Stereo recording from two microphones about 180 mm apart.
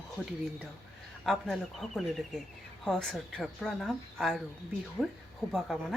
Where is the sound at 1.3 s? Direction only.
Centre (ahead or behind).